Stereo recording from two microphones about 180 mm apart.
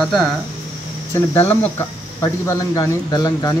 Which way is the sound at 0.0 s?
Centre (ahead or behind).